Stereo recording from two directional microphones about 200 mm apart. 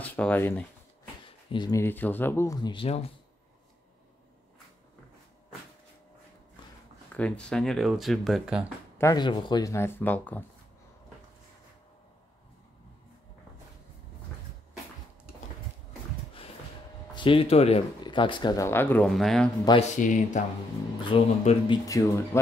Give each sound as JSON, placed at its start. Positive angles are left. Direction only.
{"t": 0.0, "sound": "speech", "side_deg": 10}
{"t": 1.2, "sound": "speech", "side_deg": 25}
{"t": 7.1, "sound": "speech", "side_deg": 5}
{"t": 8.9, "sound": "speech", "side_deg": 15}
{"t": 17.1, "sound": "speech", "side_deg": 25}
{"t": 19.9, "sound": "speech", "side_deg": 40}
{"t": 21.0, "sound": "speech", "side_deg": 25}